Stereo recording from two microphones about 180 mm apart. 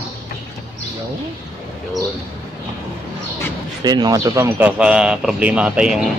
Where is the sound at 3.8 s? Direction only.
20° right (ahead or behind).